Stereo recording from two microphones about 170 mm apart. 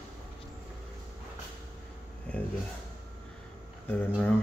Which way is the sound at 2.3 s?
10° left (ahead or behind).